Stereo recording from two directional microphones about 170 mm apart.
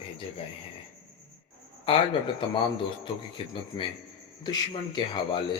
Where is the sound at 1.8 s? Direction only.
30° left (ahead or behind).